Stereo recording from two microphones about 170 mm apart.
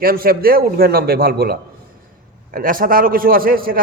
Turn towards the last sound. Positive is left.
turn(degrees=-60)  # may be behind; listen again after turning